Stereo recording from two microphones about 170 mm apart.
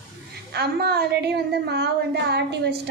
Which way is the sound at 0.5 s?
70° right (ahead or behind).